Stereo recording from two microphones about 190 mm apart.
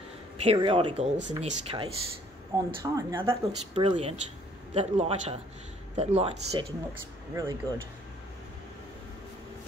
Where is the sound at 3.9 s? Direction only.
35° right (ahead or behind).